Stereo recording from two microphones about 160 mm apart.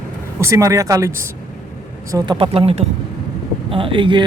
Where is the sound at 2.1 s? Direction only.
30° right (ahead or behind).